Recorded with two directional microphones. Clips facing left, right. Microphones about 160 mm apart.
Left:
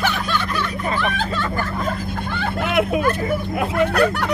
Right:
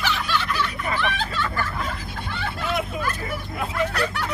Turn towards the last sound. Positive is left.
turn(degrees=55)  # may be behind; listen again after turning